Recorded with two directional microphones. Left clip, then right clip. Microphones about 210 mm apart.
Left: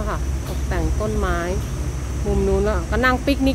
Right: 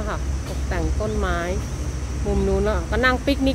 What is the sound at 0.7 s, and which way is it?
Speech, 5° left (ahead or behind).